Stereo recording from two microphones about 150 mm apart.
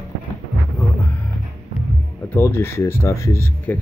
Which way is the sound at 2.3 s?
15° left (ahead or behind).